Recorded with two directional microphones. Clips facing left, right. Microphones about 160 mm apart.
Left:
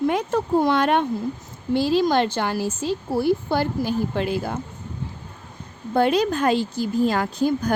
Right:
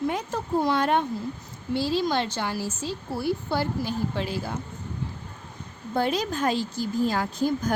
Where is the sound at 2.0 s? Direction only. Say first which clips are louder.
Left 6 dB; 55° left (ahead or behind).